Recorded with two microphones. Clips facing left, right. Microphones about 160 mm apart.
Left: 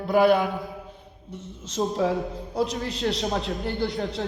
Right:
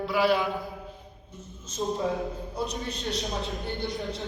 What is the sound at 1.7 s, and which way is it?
A man's voice, 90° left.